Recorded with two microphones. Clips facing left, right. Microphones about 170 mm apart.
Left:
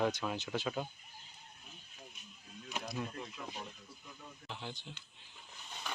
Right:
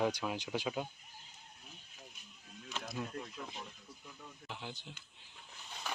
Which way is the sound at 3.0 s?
Centre (ahead or behind).